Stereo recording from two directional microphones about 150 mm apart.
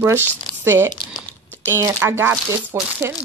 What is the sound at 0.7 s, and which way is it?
Speech, 15° right (ahead or behind).